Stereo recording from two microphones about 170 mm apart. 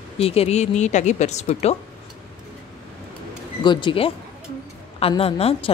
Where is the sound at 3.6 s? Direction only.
25° left (ahead or behind).